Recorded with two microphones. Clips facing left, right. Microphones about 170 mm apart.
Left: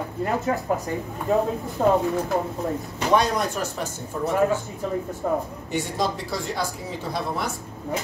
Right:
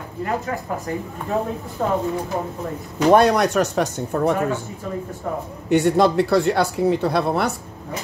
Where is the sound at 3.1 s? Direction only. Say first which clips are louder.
Right 6 dB; 70° right (ahead or behind).